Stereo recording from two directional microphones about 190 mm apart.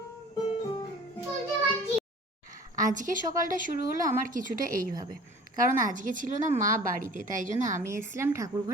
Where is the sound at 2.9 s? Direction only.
45° right (ahead or behind).